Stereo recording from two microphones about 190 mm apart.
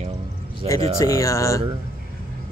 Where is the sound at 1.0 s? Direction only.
15° left (ahead or behind).